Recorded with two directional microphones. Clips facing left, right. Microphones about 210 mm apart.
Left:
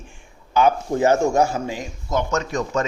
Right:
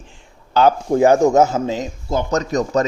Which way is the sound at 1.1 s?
20° right (ahead or behind).